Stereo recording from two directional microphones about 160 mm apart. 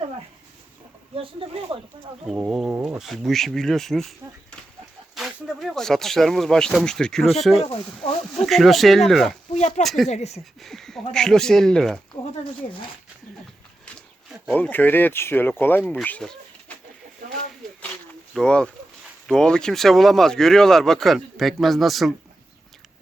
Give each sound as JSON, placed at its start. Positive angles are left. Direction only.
{"t": 1.1, "sound": "speech", "side_deg": -35}
{"t": 2.2, "sound": "speech", "side_deg": -5}
{"t": 5.1, "sound": "speech", "side_deg": 0}
{"t": 9.6, "sound": "speech", "side_deg": 45}
{"t": 9.8, "sound": "speech", "side_deg": 0}
{"t": 10.1, "sound": "speech", "side_deg": 45}
{"t": 10.6, "sound": "speech", "side_deg": 0}
{"t": 14.4, "sound": "speech", "side_deg": 10}
{"t": 18.3, "sound": "speech", "side_deg": 5}